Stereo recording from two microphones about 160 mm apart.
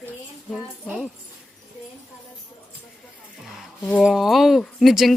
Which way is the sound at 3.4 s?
Centre (ahead or behind).